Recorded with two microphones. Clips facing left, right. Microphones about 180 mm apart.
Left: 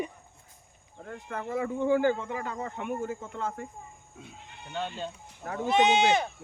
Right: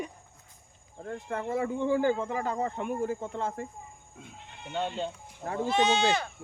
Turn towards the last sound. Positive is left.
turn(degrees=20)  # may be behind; listen again after turning